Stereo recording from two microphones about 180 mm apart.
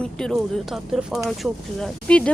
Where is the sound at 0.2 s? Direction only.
Centre (ahead or behind).